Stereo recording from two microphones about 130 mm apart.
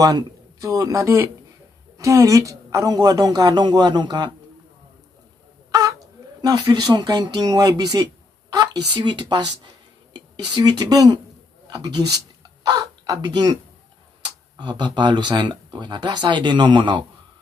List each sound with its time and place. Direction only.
0.0 s a woman's voice: 25° right (ahead or behind)
5.7 s a sound: 25° right (ahead or behind)
6.4 s a woman's voice: 35° right (ahead or behind)
14.6 s speech: 35° right (ahead or behind)